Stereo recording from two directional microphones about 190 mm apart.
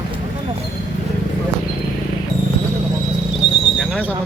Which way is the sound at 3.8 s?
5° right (ahead or behind).